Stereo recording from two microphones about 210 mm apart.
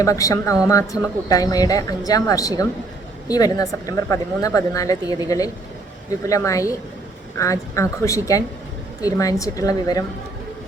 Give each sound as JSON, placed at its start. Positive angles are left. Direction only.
{"t": 0.0, "sound": "speech", "side_deg": 15}